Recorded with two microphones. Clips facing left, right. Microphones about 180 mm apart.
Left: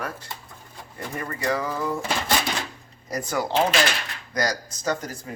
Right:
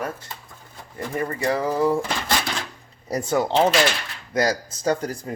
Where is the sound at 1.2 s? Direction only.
30° right (ahead or behind).